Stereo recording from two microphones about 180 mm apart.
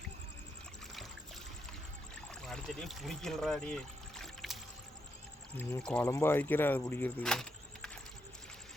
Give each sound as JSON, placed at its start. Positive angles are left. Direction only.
{"t": 2.3, "sound": "speech", "side_deg": 0}
{"t": 5.5, "sound": "speech", "side_deg": 10}